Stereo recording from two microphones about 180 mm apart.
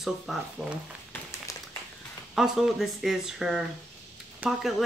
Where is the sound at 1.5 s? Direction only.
20° left (ahead or behind).